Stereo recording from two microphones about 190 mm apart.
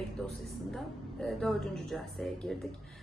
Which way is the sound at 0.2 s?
5° left (ahead or behind).